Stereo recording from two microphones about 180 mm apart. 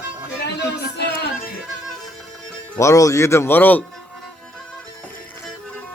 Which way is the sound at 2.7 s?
15° left (ahead or behind).